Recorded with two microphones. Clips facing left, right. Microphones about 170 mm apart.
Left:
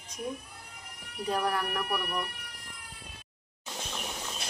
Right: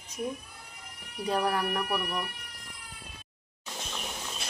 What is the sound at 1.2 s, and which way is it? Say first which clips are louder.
Speech: right 2 dB; 5° right (ahead or behind).